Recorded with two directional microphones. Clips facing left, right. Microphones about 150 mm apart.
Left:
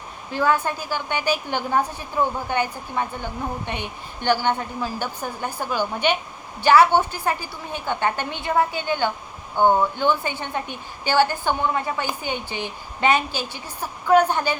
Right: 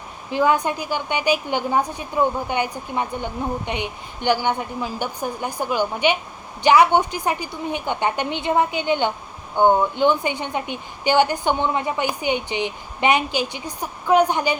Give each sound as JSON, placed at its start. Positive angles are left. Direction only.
{"t": 0.3, "sound": "a woman's voice", "side_deg": -15}